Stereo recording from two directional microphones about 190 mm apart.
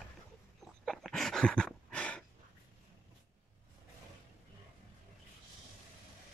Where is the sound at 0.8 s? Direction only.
Centre (ahead or behind).